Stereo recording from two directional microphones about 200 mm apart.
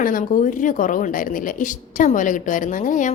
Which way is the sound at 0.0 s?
45° left (ahead or behind).